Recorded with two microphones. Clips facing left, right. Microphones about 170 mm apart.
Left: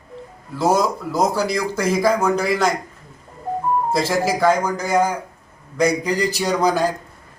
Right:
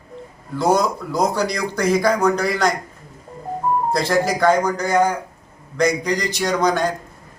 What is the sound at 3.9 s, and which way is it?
Speech, 5° left (ahead or behind).